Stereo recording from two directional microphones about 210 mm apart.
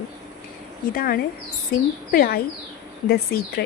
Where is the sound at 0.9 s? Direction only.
45° left (ahead or behind).